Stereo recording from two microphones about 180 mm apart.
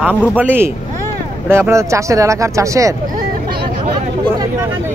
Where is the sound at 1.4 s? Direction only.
15° right (ahead or behind).